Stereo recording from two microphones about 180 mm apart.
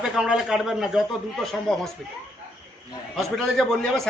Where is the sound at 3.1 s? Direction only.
Centre (ahead or behind).